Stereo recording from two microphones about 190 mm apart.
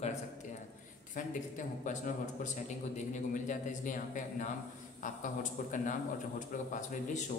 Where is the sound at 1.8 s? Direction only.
40° left (ahead or behind).